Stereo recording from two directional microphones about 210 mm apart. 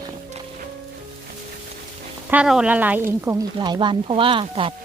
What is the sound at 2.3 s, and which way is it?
A woman's voice, 5° right (ahead or behind).